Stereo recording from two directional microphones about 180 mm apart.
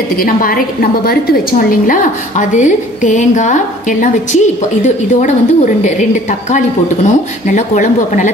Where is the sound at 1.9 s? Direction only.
45° left (ahead or behind).